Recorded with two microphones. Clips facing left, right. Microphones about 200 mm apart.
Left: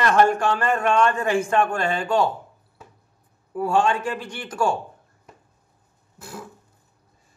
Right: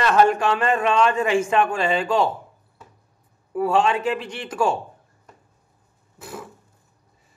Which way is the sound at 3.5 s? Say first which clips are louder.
Right 1 dB; 5° right (ahead or behind).